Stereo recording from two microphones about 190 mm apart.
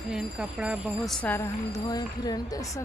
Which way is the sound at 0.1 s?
5° right (ahead or behind).